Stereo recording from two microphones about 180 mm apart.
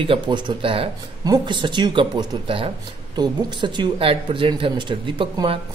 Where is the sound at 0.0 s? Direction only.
25° right (ahead or behind).